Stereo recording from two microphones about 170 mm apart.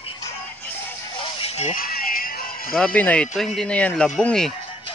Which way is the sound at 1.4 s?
40° left (ahead or behind).